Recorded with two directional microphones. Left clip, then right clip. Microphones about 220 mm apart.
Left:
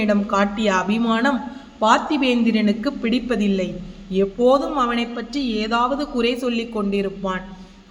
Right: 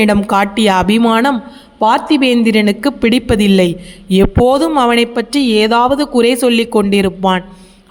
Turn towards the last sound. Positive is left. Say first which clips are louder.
# right 11 dB
turn(degrees=-50)  # may be behind; listen again after turning